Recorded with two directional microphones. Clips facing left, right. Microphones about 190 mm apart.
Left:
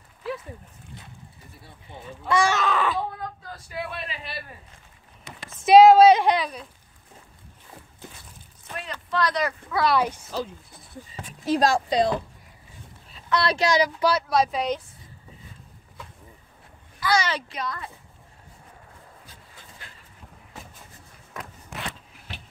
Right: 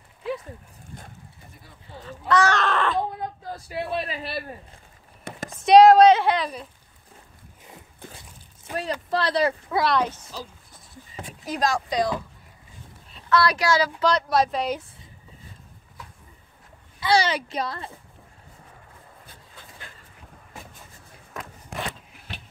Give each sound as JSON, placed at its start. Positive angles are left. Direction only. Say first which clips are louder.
{"t": 1.9, "sound": "a woman's voice", "louder": "right 2 dB", "side_deg": 15}
{"t": 2.6, "sound": "baby cry", "louder": "even", "side_deg": 0}
{"t": 3.7, "sound": "a man's voice", "louder": "right 5 dB", "side_deg": -35}
{"t": 5.3, "sound": "a sound", "louder": "right 6 dB", "side_deg": -55}
{"t": 5.7, "sound": "a woman's voice", "louder": "even", "side_deg": 5}
{"t": 6.4, "sound": "baby cry", "louder": "right 1 dB", "side_deg": 0}
{"t": 8.7, "sound": "a sound", "louder": "right 6 dB", "side_deg": -10}
{"t": 9.1, "sound": "speech", "louder": "right 2 dB", "side_deg": -30}
{"t": 9.8, "sound": "a woman's voice", "louder": "left 3 dB", "side_deg": 10}
{"t": 11.4, "sound": "speech", "louder": "left 4 dB", "side_deg": 30}
{"t": 13.3, "sound": "a woman's voice", "louder": "right 1 dB", "side_deg": 25}
{"t": 17.0, "sound": "a sound", "louder": "right 3 dB", "side_deg": -30}
{"t": 17.5, "sound": "speech", "louder": "right 3 dB", "side_deg": -30}